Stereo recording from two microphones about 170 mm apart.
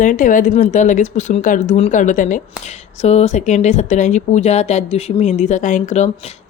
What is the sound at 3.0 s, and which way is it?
Speech, 40° left (ahead or behind).